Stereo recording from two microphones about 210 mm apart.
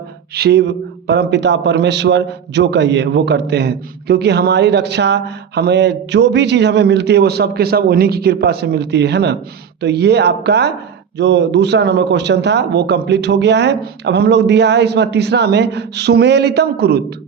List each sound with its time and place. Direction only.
0.3 s a man's voice: 50° right (ahead or behind)